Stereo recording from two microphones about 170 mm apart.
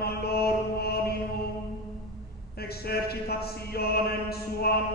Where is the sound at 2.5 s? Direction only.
65° left (ahead or behind).